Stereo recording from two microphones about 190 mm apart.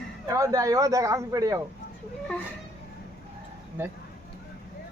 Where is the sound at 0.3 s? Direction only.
15° right (ahead or behind).